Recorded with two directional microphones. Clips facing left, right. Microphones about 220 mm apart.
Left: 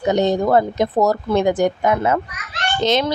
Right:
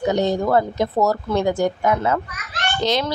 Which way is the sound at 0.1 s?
20° left (ahead or behind).